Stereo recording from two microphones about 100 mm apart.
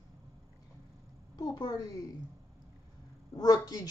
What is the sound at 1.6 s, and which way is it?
Speech, 50° left (ahead or behind).